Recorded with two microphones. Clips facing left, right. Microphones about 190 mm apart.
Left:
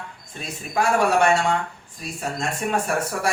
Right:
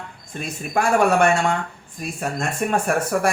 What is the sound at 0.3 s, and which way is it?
Speech, 55° right (ahead or behind).